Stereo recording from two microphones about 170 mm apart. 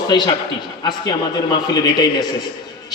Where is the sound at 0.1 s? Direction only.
25° left (ahead or behind).